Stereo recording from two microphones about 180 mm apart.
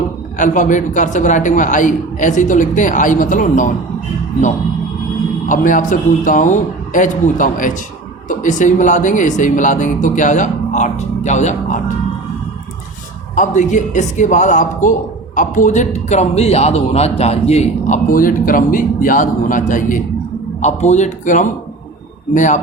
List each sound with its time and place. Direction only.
0.3 s speech: 45° left (ahead or behind)
5.5 s speech: 45° left (ahead or behind)
13.3 s a man's voice: 45° left (ahead or behind)